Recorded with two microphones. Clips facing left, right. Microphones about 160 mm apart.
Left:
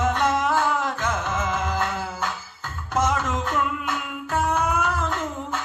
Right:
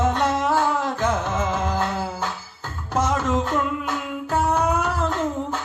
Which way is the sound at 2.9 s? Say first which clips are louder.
Right 2 dB; 35° right (ahead or behind).